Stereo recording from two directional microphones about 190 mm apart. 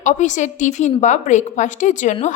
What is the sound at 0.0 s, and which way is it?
A woman's voice, 40° left (ahead or behind).